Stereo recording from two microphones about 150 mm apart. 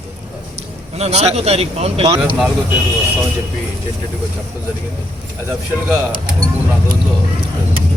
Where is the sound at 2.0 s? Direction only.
20° right (ahead or behind).